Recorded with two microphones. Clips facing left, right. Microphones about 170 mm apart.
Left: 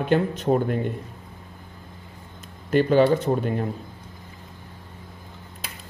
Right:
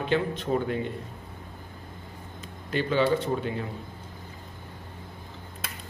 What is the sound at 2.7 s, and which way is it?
Speech, 45° left (ahead or behind).